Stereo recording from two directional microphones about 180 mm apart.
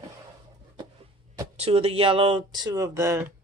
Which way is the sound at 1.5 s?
35° right (ahead or behind).